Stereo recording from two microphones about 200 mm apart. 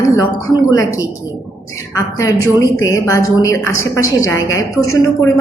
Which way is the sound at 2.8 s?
15° left (ahead or behind).